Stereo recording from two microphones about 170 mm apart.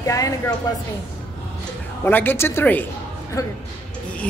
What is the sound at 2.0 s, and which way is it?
Speech, 10° left (ahead or behind).